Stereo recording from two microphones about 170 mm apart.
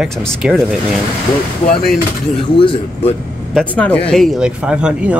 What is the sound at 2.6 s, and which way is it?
Speech, 35° left (ahead or behind).